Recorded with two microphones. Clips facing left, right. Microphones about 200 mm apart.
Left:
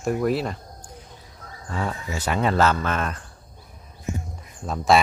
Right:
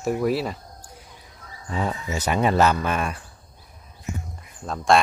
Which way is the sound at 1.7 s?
15° right (ahead or behind).